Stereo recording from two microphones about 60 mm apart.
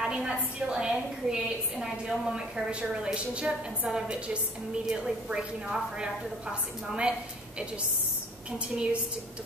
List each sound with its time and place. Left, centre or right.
0.0 s a woman's voice: centre